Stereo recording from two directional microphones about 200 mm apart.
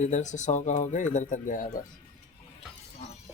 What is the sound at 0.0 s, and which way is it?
Speech, 35° left (ahead or behind).